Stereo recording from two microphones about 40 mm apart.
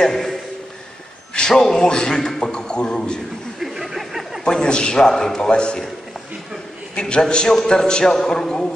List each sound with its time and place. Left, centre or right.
0.0 s a man's voice: centre
1.5 s a man's voice: centre
3.5 s a sound: centre
4.5 s a sound: left
5.0 s a man's voice: centre
5.5 s a man's voice: left
7.0 s a man's voice: left